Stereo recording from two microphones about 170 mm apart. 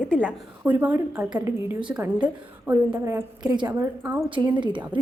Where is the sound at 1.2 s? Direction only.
25° right (ahead or behind).